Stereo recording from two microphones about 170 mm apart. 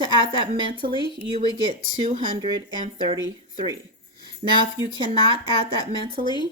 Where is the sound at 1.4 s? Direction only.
55° right (ahead or behind).